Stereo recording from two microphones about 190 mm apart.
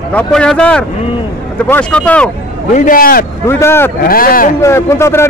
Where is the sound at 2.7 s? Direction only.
45° left (ahead or behind).